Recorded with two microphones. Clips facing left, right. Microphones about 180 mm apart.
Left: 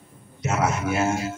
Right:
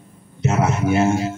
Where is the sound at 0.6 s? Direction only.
30° right (ahead or behind).